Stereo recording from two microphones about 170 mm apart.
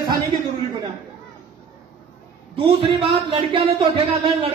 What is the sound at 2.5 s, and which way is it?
A man's voice, 30° right (ahead or behind).